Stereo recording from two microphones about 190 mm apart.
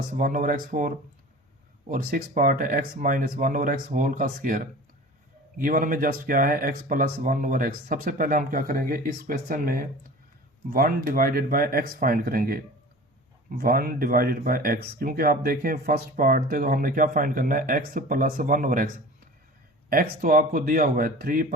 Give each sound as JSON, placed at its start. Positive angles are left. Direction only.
{"t": 0.1, "sound": "speech", "side_deg": -45}
{"t": 19.9, "sound": "speech", "side_deg": -50}